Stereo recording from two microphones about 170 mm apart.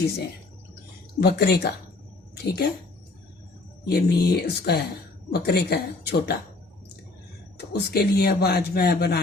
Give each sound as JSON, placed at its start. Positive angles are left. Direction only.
{"t": 1.2, "sound": "speech", "side_deg": 70}
{"t": 3.8, "sound": "speech", "side_deg": 65}
{"t": 7.7, "sound": "speech", "side_deg": 70}